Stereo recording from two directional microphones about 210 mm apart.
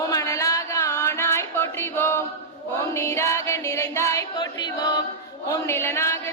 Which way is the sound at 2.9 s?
15° left (ahead or behind).